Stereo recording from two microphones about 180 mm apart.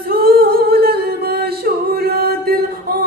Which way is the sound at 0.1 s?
55° right (ahead or behind).